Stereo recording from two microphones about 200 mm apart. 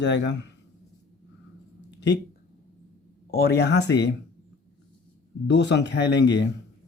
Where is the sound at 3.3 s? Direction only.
50° left (ahead or behind).